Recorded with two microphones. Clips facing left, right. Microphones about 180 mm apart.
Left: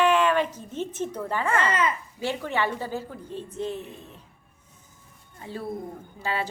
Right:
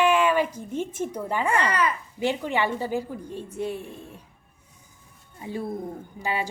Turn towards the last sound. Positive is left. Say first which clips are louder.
# right 1 dB
turn(degrees=-15)  # may be behind; listen again after turning